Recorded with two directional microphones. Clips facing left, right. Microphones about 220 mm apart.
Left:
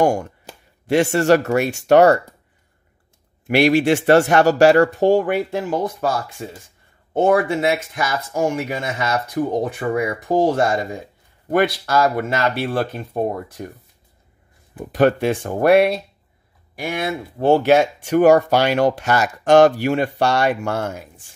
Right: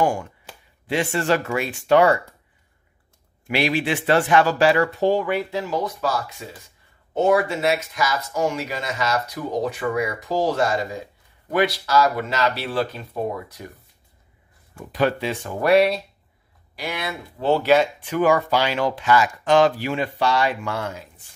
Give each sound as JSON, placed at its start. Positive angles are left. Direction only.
{"t": 0.0, "sound": "speech", "side_deg": 40}
{"t": 3.4, "sound": "speech", "side_deg": 50}
{"t": 15.0, "sound": "speech", "side_deg": 50}